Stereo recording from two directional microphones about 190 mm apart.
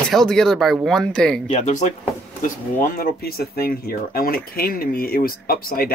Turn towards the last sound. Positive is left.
turn(degrees=50)  # may be behind; listen again after turning